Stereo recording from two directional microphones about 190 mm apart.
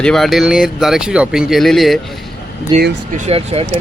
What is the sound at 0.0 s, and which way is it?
Speech, centre (ahead or behind).